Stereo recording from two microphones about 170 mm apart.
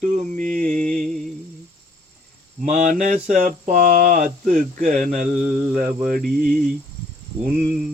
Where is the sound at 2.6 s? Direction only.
50° right (ahead or behind).